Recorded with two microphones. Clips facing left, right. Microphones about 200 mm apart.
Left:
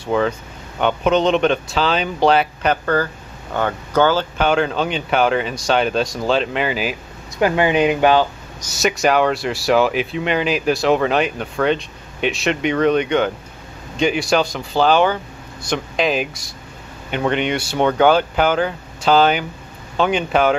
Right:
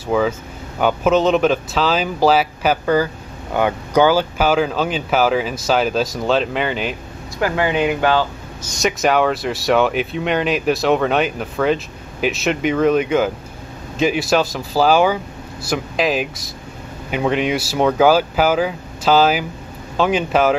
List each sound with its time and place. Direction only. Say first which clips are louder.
0.0 s speech: right 1 dB; 5° right (ahead or behind)
7.3 s speech: left 2 dB; 20° left (ahead or behind)
8.7 s speech: even; centre (ahead or behind)